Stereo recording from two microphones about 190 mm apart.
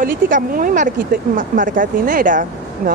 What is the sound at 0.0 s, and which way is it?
A woman's voice, 50° right (ahead or behind).